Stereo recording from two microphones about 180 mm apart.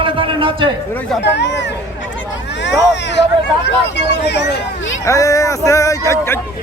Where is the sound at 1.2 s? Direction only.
75° left (ahead or behind).